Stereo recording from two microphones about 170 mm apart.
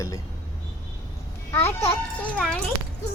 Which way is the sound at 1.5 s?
15° left (ahead or behind).